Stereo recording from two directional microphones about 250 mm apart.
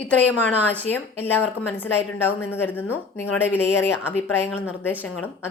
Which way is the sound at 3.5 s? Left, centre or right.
Centre.